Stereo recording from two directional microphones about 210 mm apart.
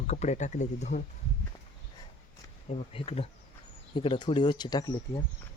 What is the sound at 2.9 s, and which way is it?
Speech, 25° left (ahead or behind).